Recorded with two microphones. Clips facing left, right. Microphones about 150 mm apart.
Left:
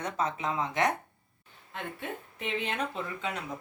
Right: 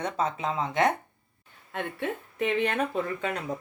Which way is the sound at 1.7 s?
60° right (ahead or behind).